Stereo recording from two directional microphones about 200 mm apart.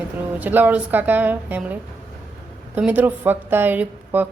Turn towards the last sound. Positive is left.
turn(degrees=-10)  # may be behind; listen again after turning